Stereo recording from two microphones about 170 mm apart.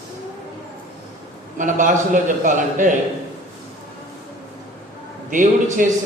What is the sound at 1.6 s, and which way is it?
A man's voice, 50° right (ahead or behind).